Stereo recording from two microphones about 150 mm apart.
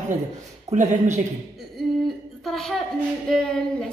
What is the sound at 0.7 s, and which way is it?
Speech, 50° right (ahead or behind).